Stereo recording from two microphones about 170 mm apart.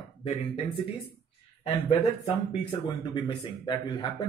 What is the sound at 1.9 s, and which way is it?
Speech, 30° left (ahead or behind).